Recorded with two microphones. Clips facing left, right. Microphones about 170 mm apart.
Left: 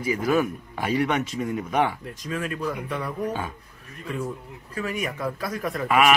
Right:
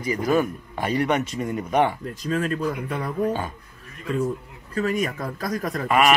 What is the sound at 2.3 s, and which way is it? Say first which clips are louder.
Speech: right 4 dB; 40° right (ahead or behind).